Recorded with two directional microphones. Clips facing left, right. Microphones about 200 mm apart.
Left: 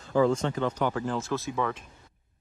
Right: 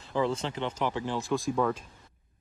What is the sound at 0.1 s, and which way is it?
Speech, 40° left (ahead or behind).